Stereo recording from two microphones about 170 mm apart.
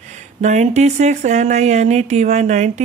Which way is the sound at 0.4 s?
45° right (ahead or behind).